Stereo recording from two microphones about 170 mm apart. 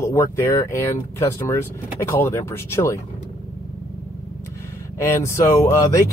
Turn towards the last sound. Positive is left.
turn(degrees=20)  # may be behind; listen again after turning